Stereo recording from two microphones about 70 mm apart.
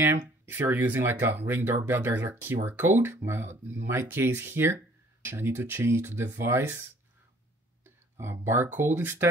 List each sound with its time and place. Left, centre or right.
0.0 s speech: right